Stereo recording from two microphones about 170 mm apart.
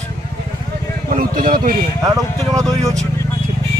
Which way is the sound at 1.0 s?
55° right (ahead or behind).